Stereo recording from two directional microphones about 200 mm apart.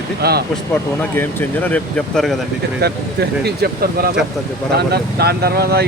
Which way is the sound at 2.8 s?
55° right (ahead or behind).